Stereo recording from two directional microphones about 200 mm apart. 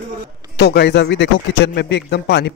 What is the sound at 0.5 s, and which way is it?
A man's voice, 55° left (ahead or behind).